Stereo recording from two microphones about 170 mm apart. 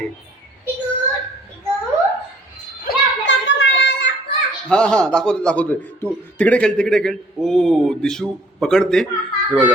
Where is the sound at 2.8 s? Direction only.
90° left.